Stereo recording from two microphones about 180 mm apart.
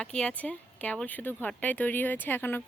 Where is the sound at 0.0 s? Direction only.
5° left (ahead or behind).